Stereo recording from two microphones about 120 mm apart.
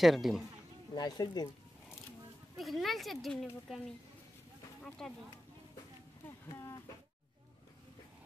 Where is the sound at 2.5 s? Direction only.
Centre (ahead or behind).